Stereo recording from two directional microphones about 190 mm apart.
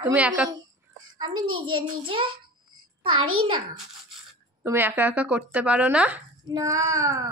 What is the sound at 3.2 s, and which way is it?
Speech, 90° right.